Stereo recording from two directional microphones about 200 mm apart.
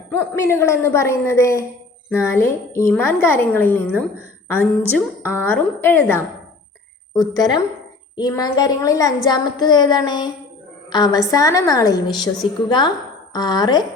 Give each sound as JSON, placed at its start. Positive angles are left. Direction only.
{"t": 0.2, "sound": "a child's voice", "side_deg": 10}